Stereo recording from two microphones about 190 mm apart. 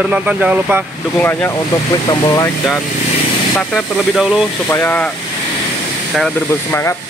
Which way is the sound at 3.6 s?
5° left (ahead or behind).